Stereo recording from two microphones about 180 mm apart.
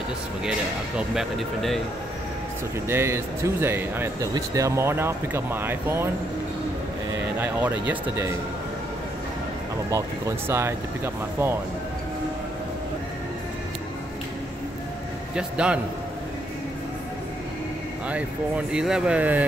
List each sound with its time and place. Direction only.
0.5 s speech: 5° right (ahead or behind)
2.9 s speech: 15° right (ahead or behind)
7.3 s speech: 10° right (ahead or behind)
9.8 s speech: 15° right (ahead or behind)
15.3 s speech: 5° right (ahead or behind)
18.7 s speech: 5° right (ahead or behind)